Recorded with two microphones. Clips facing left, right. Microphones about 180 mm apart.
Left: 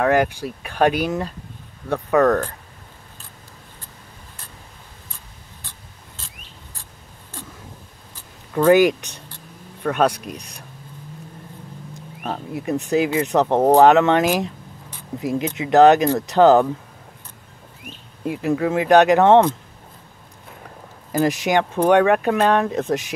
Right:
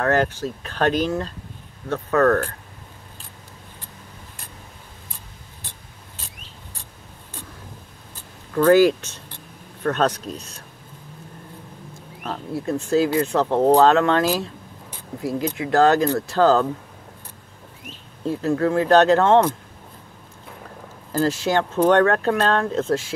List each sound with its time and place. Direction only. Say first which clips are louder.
0.0 s speech: left 2 dB; 10° left (ahead or behind)
8.5 s speech: even; 15° left (ahead or behind)
12.2 s speech: even; 20° left (ahead or behind)
18.2 s speech: even; 15° left (ahead or behind)
21.1 s speech: left 2 dB; 15° left (ahead or behind)